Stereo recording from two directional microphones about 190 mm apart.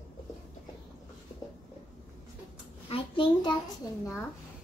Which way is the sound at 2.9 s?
25° left (ahead or behind).